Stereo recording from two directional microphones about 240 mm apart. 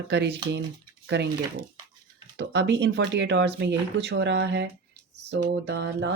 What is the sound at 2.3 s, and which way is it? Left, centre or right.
Speech, right.